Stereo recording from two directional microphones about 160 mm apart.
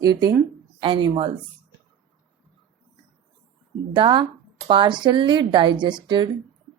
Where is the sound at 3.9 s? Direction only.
30° right (ahead or behind).